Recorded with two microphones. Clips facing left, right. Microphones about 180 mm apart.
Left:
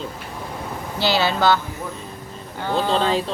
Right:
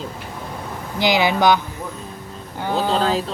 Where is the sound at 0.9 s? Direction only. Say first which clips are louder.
Right 3 dB; 15° right (ahead or behind).